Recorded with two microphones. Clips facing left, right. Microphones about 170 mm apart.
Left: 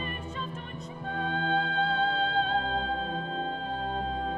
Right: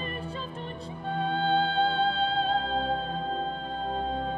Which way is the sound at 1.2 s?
30° right (ahead or behind).